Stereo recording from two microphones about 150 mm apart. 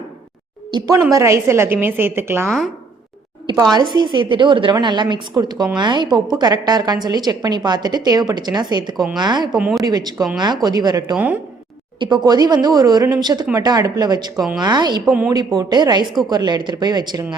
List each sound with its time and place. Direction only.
0.7 s a woman's voice: 25° right (ahead or behind)
3.4 s a woman's voice: 25° right (ahead or behind)
9.6 s a woman's voice: 5° right (ahead or behind)
9.8 s a woman's voice: 25° right (ahead or behind)
11.1 s a woman's voice: 10° right (ahead or behind)
11.9 s a woman's voice: 30° right (ahead or behind)